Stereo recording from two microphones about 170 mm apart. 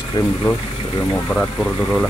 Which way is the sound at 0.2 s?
20° left (ahead or behind).